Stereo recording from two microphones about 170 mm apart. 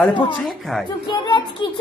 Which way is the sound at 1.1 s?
25° left (ahead or behind).